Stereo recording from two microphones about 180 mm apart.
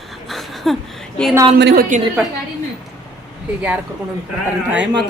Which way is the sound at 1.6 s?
70° right (ahead or behind).